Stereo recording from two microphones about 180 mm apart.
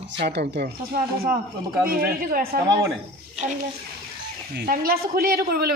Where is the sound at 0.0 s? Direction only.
75° right (ahead or behind); by 2.6 s 55° right (ahead or behind).